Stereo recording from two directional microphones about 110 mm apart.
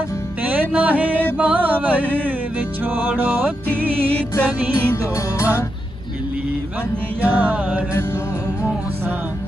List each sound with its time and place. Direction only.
0.4 s music: 15° right (ahead or behind)
4.1 s music: 10° left (ahead or behind)
5.1 s music: 25° left (ahead or behind)
7.2 s music: 15° right (ahead or behind)